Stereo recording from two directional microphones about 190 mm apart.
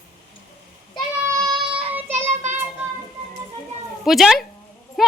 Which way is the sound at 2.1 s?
35° right (ahead or behind).